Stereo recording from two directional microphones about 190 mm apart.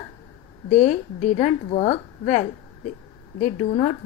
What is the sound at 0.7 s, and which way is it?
A woman's voice, 40° left (ahead or behind).